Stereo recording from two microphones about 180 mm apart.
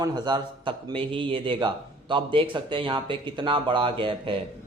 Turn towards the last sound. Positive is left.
turn(degrees=-30)  # may be behind; listen again after turning